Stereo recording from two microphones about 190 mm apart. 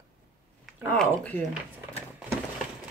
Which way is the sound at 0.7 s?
5° left (ahead or behind).